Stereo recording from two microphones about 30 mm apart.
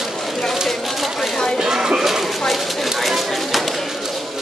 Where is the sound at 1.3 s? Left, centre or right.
Left.